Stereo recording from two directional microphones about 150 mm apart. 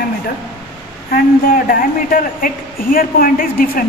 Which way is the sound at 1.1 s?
70° left (ahead or behind).